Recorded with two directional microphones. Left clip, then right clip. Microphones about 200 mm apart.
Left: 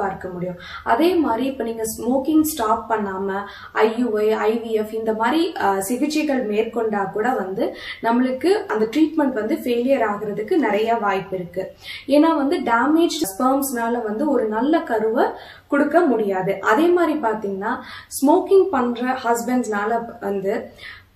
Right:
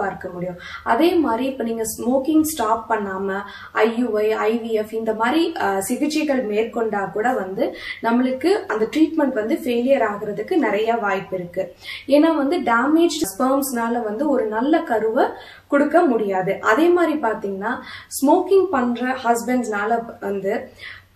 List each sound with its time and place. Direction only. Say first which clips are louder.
0.8 s a woman's voice: even; centre (ahead or behind)